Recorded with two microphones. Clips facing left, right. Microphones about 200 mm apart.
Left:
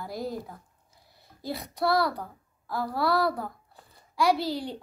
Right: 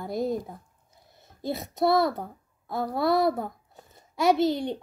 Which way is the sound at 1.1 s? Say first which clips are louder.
Right 4 dB; 20° right (ahead or behind).